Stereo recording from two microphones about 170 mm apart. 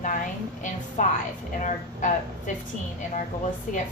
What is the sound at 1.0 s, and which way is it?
A woman's voice, 45° left (ahead or behind).